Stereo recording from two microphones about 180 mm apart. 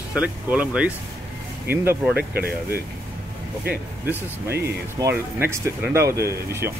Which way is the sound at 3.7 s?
10° right (ahead or behind).